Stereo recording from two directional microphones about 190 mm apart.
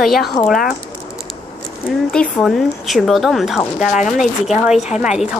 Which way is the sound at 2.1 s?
Centre (ahead or behind).